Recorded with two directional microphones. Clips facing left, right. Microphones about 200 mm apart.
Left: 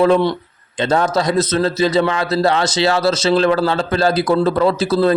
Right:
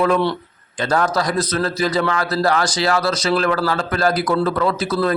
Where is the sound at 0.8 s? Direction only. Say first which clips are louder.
Left 3 dB; 25° left (ahead or behind).